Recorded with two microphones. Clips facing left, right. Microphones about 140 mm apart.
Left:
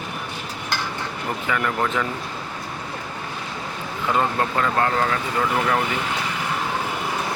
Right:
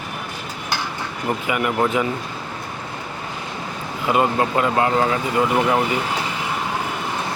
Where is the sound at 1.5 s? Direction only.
15° right (ahead or behind).